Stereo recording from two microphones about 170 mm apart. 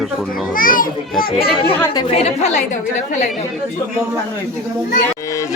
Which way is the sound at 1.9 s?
35° left (ahead or behind).